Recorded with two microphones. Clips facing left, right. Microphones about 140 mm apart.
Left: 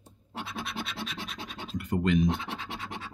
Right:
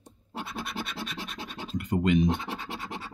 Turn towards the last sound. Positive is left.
turn(degrees=0)  # may be behind; listen again after turning